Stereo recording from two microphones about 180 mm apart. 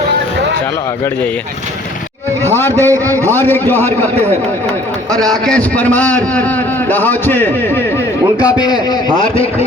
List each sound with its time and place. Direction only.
2.4 s a man's voice: 10° left (ahead or behind)
5.1 s a man's voice: 5° left (ahead or behind)
8.4 s a man's voice: 20° left (ahead or behind)